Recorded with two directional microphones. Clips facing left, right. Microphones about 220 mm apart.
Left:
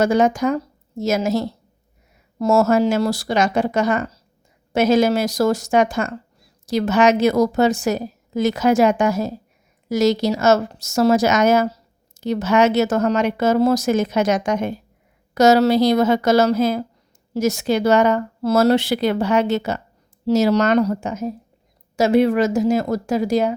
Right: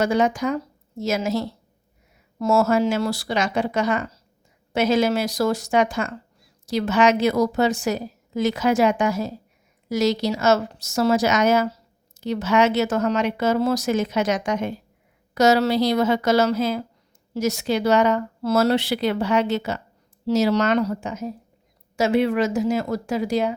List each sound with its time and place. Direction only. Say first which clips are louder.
0.0 s a woman's voice: left 4 dB; 45° left (ahead or behind)